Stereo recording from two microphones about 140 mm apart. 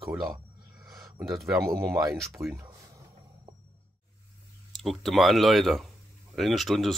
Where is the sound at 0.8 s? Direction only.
25° right (ahead or behind).